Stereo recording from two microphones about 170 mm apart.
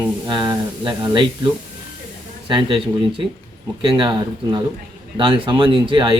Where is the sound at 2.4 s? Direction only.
30° right (ahead or behind).